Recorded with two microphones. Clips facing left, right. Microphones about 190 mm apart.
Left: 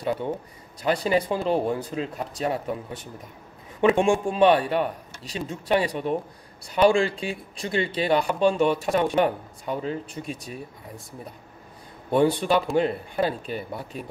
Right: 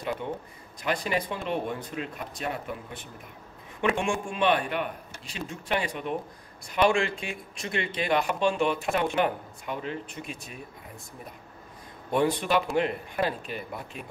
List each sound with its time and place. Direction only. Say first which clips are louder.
0.8 s speech: left 6 dB; 30° left (ahead or behind)
4.0 s speech: left 8 dB; 35° left (ahead or behind)
12.1 s speech: left 4 dB; 30° left (ahead or behind)